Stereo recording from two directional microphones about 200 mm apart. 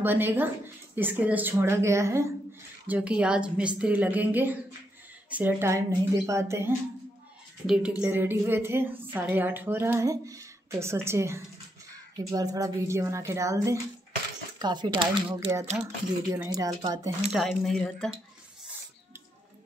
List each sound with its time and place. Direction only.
0.0 s a woman's voice: 10° right (ahead or behind); by 15.9 s 30° right (ahead or behind)
16.3 s a woman's voice: 15° right (ahead or behind)
17.3 s speech: centre (ahead or behind)